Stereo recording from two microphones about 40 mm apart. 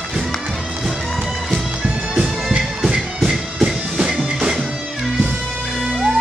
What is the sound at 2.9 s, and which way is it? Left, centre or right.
Music, centre.